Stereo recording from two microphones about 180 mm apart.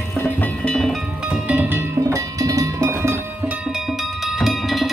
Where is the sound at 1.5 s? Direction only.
10° right (ahead or behind).